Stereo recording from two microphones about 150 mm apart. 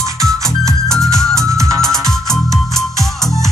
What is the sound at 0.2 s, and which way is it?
Music, centre (ahead or behind).